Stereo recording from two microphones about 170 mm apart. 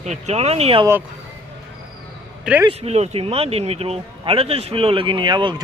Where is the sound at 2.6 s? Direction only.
35° right (ahead or behind).